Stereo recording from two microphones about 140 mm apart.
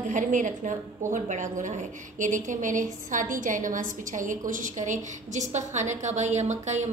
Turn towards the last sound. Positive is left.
turn(degrees=-55)  # may be behind; listen again after turning